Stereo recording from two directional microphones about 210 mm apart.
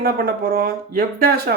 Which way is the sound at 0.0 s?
45° right (ahead or behind).